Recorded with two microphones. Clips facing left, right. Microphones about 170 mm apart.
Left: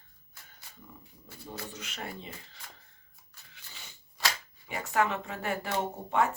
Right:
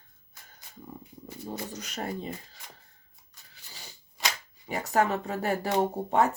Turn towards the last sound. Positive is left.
turn(degrees=-40)  # may be behind; listen again after turning